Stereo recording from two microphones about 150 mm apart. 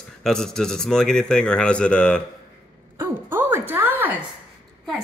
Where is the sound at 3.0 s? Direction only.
15° right (ahead or behind).